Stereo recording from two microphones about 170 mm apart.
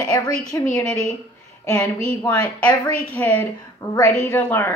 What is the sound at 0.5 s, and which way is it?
Speech, 20° left (ahead or behind).